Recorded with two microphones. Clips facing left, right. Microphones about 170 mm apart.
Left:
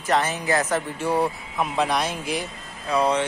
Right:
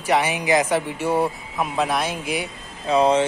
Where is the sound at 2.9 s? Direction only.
25° right (ahead or behind).